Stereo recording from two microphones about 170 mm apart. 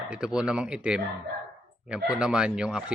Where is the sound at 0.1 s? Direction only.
5° right (ahead or behind).